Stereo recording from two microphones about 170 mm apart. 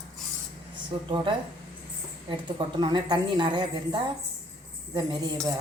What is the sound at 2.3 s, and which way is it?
A woman's voice, 25° right (ahead or behind).